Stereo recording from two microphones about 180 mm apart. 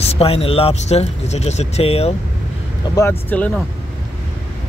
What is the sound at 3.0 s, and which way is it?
Speech, 10° left (ahead or behind).